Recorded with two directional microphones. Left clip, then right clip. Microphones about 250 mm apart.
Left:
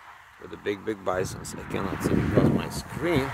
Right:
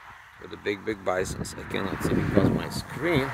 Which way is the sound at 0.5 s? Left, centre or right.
Centre.